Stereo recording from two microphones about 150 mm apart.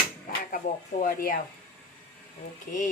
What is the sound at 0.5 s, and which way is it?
Speech, 55° left (ahead or behind).